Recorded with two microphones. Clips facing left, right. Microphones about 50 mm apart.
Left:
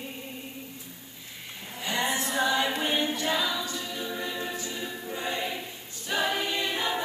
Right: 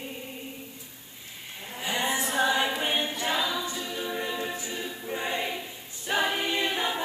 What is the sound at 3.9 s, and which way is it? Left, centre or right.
Choir, centre.